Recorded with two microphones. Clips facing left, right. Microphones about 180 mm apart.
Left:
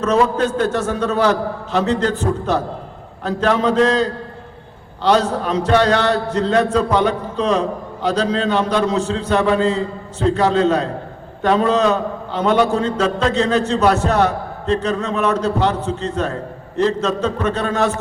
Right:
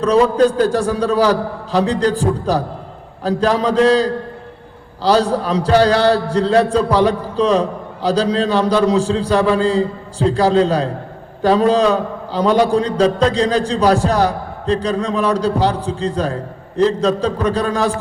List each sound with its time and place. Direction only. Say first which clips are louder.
0.0 s speech: right 4 dB; 35° right (ahead or behind)
3.2 s speech: right 1 dB; 35° right (ahead or behind)
5.4 s speech: right 2 dB; 35° right (ahead or behind)